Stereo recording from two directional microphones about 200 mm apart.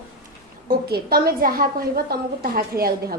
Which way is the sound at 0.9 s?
50° right (ahead or behind).